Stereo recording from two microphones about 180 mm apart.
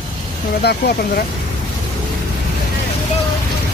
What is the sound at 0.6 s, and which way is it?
Speech, 65° left (ahead or behind).